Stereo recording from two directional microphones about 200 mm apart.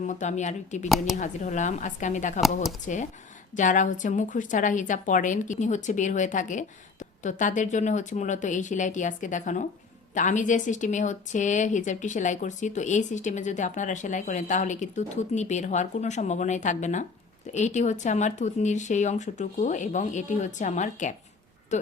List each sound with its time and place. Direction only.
0.1 s speech: 35° left (ahead or behind)
0.9 s speech: centre (ahead or behind)
1.1 s speech: 35° left (ahead or behind)